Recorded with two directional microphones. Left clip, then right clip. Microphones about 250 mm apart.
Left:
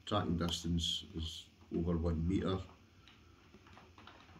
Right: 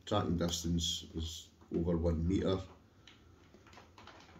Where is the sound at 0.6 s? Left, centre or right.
Left.